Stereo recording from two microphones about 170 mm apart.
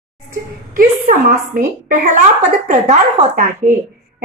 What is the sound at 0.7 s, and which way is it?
A woman's voice, 55° right (ahead or behind).